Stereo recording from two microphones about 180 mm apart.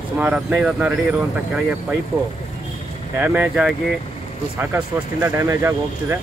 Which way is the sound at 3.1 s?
10° right (ahead or behind).